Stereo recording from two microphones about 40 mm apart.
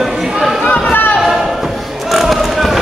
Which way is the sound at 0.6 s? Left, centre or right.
Left.